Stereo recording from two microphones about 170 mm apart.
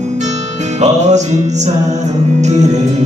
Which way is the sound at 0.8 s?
45° right (ahead or behind).